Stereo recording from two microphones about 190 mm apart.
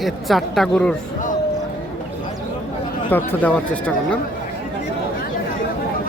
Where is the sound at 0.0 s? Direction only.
Centre (ahead or behind).